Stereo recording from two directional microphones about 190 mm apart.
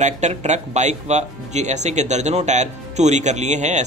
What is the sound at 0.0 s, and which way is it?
Speech, 35° right (ahead or behind).